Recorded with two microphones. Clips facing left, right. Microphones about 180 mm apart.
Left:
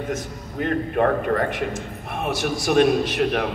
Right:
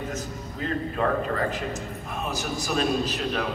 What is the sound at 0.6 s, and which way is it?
A man's voice, 65° left (ahead or behind).